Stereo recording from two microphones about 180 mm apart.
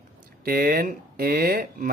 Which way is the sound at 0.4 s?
55° right (ahead or behind).